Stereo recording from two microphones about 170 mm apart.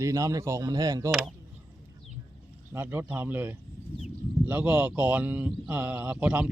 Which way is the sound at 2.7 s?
10° right (ahead or behind).